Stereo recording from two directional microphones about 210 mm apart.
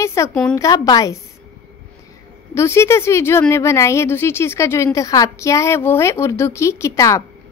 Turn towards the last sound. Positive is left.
turn(degrees=15)  # may be behind; listen again after turning